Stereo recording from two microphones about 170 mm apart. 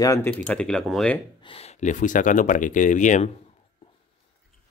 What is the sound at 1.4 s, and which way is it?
Speech, 35° left (ahead or behind).